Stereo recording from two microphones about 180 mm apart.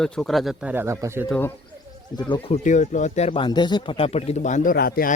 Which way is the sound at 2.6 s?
45° left (ahead or behind).